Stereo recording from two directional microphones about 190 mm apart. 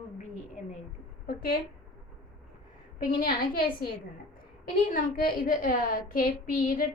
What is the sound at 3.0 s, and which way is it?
Speech, 45° left (ahead or behind).